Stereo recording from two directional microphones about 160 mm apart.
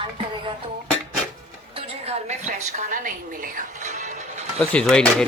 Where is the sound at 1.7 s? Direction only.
40° right (ahead or behind).